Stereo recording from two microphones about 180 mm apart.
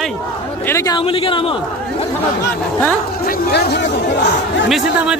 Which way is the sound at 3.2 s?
60° left (ahead or behind).